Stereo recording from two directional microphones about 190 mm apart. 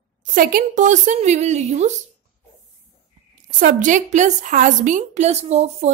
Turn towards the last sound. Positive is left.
turn(degrees=-35)  # may be behind; listen again after turning